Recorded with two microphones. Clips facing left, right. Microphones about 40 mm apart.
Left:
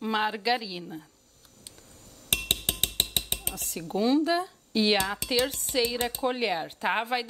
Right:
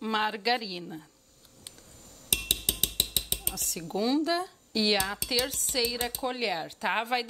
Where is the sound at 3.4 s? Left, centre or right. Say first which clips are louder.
Left 1 dB; left.